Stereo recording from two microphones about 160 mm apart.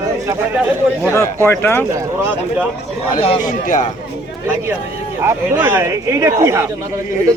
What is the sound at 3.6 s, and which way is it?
Speech, 55° left (ahead or behind).